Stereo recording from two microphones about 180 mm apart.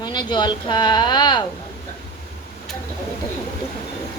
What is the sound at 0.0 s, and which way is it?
Speech, 25° left (ahead or behind).